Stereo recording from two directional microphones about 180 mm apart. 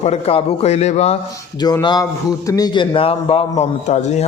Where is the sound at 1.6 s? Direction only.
20° left (ahead or behind).